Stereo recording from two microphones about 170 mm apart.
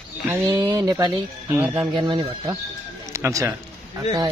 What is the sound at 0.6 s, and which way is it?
Speech, 20° right (ahead or behind).